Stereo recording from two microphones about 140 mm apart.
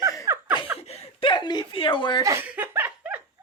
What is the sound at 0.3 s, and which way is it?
Laughter, 20° right (ahead or behind).